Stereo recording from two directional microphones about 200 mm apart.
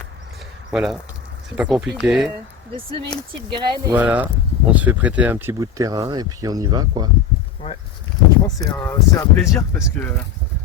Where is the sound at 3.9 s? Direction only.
10° right (ahead or behind).